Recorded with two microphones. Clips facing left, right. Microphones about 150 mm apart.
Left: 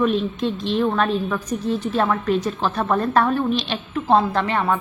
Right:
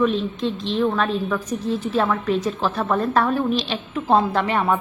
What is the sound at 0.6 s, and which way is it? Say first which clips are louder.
A woman's voice: left 1 dB; 5° left (ahead or behind).